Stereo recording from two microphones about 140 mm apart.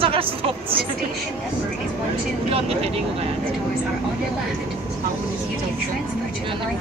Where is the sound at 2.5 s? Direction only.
45° right (ahead or behind).